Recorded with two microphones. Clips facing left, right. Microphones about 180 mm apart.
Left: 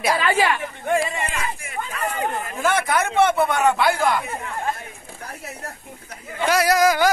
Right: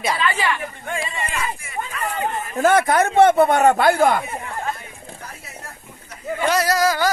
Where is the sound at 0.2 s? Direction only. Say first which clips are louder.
Left 3 dB; 50° left (ahead or behind).